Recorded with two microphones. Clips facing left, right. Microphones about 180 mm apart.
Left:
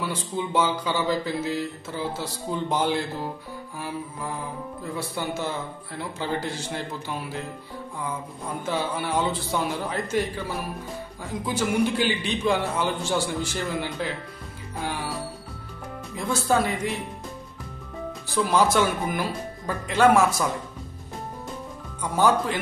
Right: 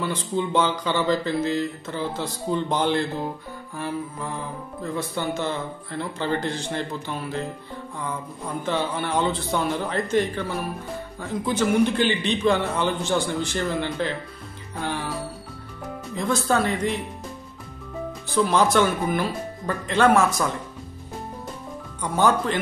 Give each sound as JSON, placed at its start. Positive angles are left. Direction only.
{"t": 0.0, "sound": "speech", "side_deg": 10}
{"t": 8.6, "sound": "speech", "side_deg": 5}
{"t": 11.4, "sound": "speech", "side_deg": 10}
{"t": 16.2, "sound": "speech", "side_deg": 10}
{"t": 18.3, "sound": "speech", "side_deg": 10}
{"t": 22.1, "sound": "speech", "side_deg": 10}